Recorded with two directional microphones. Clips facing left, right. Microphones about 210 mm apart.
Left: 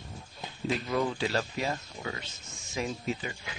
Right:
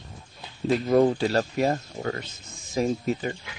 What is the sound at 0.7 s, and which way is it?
Speech, 45° right (ahead or behind).